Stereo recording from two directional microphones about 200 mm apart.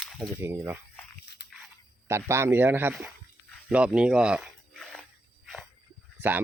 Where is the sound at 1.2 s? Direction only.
55° left (ahead or behind).